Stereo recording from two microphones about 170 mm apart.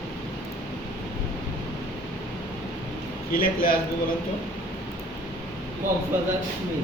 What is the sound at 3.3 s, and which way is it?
Speech, 60° left (ahead or behind).